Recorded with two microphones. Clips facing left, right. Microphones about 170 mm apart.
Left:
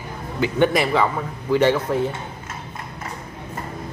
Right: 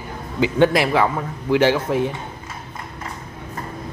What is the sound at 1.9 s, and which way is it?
Speech, 15° right (ahead or behind).